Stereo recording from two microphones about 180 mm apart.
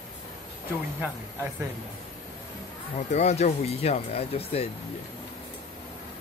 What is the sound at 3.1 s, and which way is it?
Speech, 40° left (ahead or behind).